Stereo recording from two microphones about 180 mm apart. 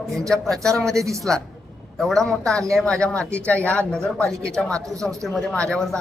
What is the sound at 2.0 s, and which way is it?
Speech, centre (ahead or behind).